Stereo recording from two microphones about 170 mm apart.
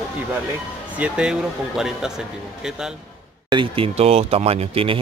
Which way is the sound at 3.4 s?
30° right (ahead or behind).